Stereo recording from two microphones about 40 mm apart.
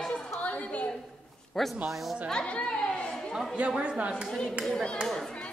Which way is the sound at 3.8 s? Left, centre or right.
Right.